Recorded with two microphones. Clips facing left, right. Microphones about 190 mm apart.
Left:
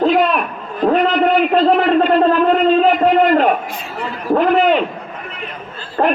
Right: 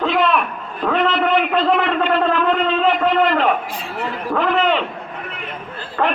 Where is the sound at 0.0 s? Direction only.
40° left (ahead or behind).